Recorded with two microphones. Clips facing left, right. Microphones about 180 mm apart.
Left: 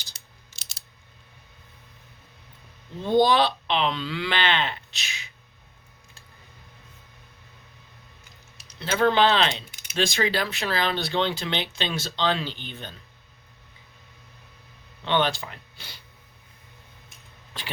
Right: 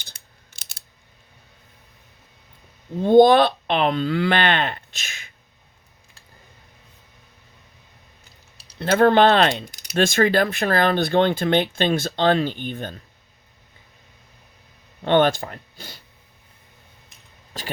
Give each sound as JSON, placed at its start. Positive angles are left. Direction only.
{"t": 0.0, "sound": "mechanisms", "side_deg": -55}
{"t": 3.0, "sound": "speech", "side_deg": -55}
{"t": 8.8, "sound": "speech", "side_deg": -50}
{"t": 9.6, "sound": "typing", "side_deg": -35}
{"t": 9.9, "sound": "speech", "side_deg": -55}
{"t": 15.0, "sound": "speech", "side_deg": -50}
{"t": 17.5, "sound": "shuffling cards", "side_deg": -40}